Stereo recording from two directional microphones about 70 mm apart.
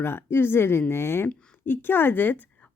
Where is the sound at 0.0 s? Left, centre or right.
Left.